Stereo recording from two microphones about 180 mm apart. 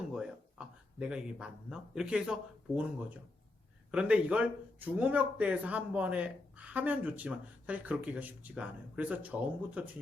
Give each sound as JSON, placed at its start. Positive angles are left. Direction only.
{"t": 0.1, "sound": "speech", "side_deg": -5}
{"t": 3.9, "sound": "speech", "side_deg": -5}